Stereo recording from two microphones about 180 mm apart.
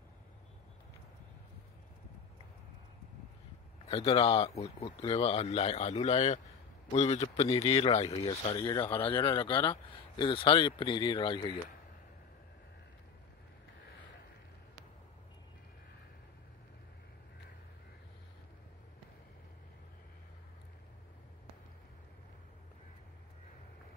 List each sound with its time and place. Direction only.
4.3 s speech: 35° left (ahead or behind)